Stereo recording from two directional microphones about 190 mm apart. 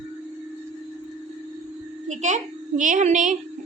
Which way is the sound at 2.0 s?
40° right (ahead or behind).